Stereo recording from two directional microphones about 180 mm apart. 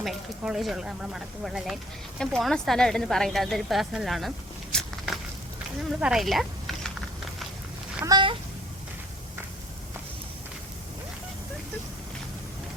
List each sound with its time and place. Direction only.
0.0 s speech: centre (ahead or behind)
4.7 s walk: centre (ahead or behind)
6.0 s speech: 5° right (ahead or behind)
8.0 s a sound: 25° right (ahead or behind)